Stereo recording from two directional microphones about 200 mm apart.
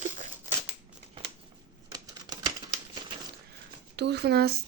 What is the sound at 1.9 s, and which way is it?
Typewriter, 20° right (ahead or behind).